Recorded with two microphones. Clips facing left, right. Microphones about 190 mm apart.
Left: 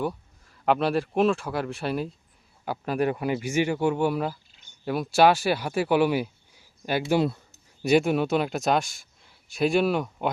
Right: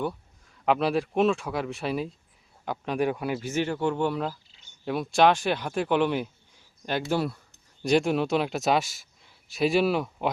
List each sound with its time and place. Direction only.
0.0 s speech: centre (ahead or behind)
3.4 s speech: 10° left (ahead or behind)
7.1 s speech: 20° left (ahead or behind)
7.5 s speech: 5° left (ahead or behind)